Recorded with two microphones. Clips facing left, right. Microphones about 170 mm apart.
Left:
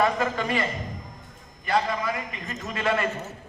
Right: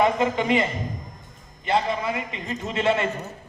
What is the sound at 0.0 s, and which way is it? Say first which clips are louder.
A man's voice: right 3 dB; 20° right (ahead or behind).